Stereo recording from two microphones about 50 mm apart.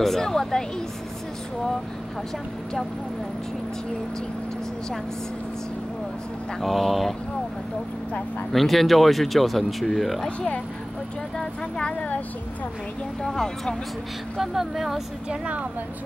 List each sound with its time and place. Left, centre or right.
0.0 s speech: centre
6.6 s speech: centre
8.5 s speech: centre
11.3 s speech: left
13.2 s speech: centre
14.3 s speech: centre
15.2 s a woman's voice: right